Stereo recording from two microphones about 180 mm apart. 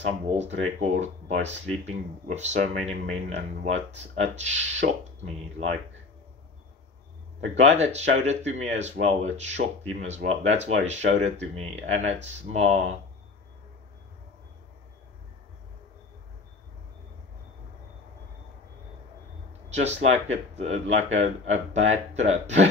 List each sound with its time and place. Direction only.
0.7 s speech: 40° right (ahead or behind)
7.3 s speech: 40° right (ahead or behind)
19.7 s speech: 40° right (ahead or behind)